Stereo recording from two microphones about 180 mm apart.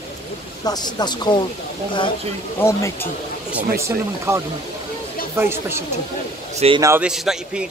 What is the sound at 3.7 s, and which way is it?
A man's voice, 15° right (ahead or behind).